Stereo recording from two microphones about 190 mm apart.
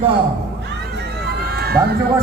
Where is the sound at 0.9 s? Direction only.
60° right (ahead or behind).